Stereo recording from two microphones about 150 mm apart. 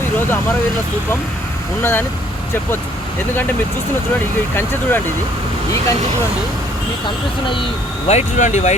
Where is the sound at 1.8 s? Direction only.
15° left (ahead or behind).